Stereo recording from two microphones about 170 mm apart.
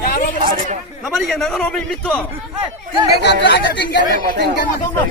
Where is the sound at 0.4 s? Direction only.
55° right (ahead or behind).